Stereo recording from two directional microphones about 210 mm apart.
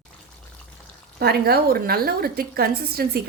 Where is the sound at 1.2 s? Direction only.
50° right (ahead or behind).